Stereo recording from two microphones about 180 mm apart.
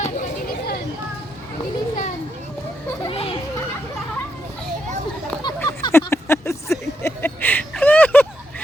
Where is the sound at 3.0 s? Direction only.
30° left (ahead or behind).